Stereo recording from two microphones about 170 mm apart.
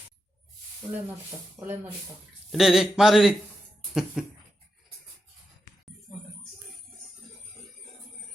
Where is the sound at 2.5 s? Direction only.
Centre (ahead or behind).